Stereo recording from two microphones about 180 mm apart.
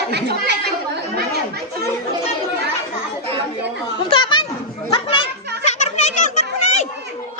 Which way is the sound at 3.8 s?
25° left (ahead or behind).